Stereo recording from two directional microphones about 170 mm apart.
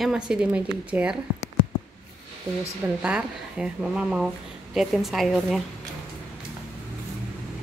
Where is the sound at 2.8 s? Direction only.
5° right (ahead or behind).